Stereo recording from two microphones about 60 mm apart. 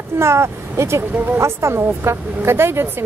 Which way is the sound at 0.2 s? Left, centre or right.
Right.